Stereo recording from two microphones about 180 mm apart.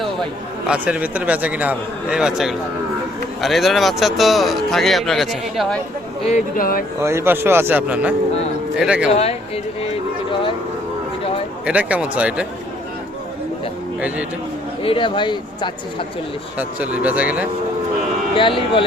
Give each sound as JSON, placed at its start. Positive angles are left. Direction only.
{"t": 0.7, "sound": "a man's voice", "side_deg": -5}
{"t": 6.6, "sound": "speech", "side_deg": 55}
{"t": 7.0, "sound": "a man's voice", "side_deg": -15}
{"t": 9.0, "sound": "speech", "side_deg": 35}
{"t": 11.6, "sound": "a man's voice", "side_deg": -5}
{"t": 14.8, "sound": "speech", "side_deg": 25}
{"t": 16.6, "sound": "a man's voice", "side_deg": -10}
{"t": 18.3, "sound": "speech", "side_deg": 30}